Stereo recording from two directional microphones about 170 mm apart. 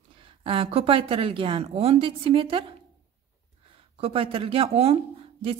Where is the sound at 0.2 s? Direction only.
30° right (ahead or behind).